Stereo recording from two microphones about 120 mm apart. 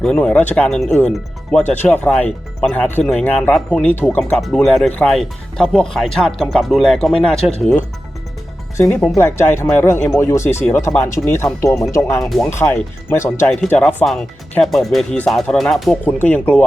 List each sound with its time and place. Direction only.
0.0 s speech: 10° left (ahead or behind)
4.4 s speech: centre (ahead or behind)
9.1 s speech: 20° left (ahead or behind)
12.2 s speech: centre (ahead or behind)
12.5 s speech: 20° left (ahead or behind)
13.5 s speech: 5° left (ahead or behind)
16.0 s speech: 15° left (ahead or behind)